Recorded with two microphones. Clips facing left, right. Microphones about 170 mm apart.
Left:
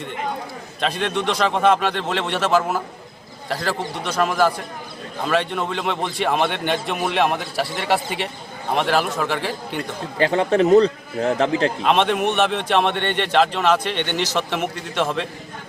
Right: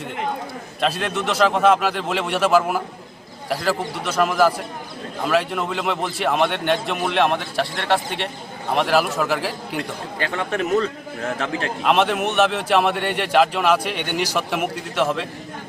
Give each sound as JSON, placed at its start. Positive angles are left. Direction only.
{"t": 0.8, "sound": "a man's voice", "side_deg": -5}
{"t": 10.5, "sound": "a man's voice", "side_deg": 30}
{"t": 11.9, "sound": "a man's voice", "side_deg": -5}